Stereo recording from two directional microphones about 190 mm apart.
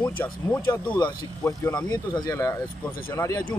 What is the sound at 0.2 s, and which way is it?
Speech, 10° left (ahead or behind).